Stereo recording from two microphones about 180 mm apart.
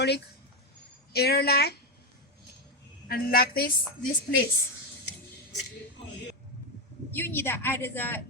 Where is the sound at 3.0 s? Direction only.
55° left (ahead or behind).